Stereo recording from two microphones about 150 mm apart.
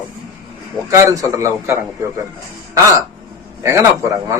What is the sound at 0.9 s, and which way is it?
Speech, 20° right (ahead or behind).